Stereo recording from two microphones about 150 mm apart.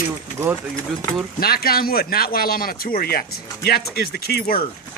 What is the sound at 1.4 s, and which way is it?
Speech, 90° left.